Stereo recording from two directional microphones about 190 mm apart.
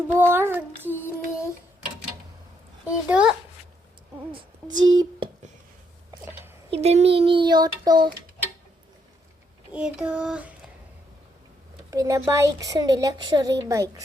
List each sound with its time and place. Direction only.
0.1 s child singing: 10° right (ahead or behind)
0.9 s music: 10° left (ahead or behind)
2.8 s a woman's voice: 5° right (ahead or behind)
4.3 s speech: 25° right (ahead or behind)
6.7 s a child's voice: 35° right (ahead or behind)
9.7 s child singing: 5° right (ahead or behind)
11.9 s a woman's voice: 15° right (ahead or behind)